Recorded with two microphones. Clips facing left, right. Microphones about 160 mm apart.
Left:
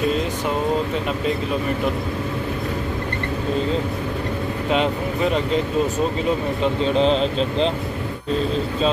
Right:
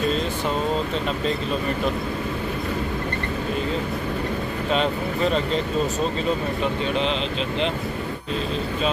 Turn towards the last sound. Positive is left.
turn(degrees=35)  # may be behind; listen again after turning